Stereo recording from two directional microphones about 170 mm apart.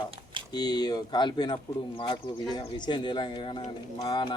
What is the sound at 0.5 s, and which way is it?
Speech, 25° left (ahead or behind).